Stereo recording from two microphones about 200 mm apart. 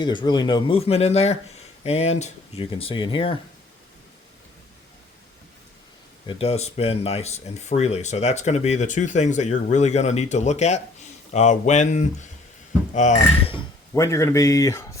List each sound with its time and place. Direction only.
0.0 s speech: 25° left (ahead or behind)
6.2 s speech: 30° left (ahead or behind)
13.9 s speech: 15° left (ahead or behind)